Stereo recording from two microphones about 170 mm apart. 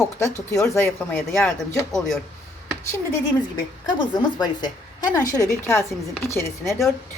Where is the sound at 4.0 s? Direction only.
25° left (ahead or behind).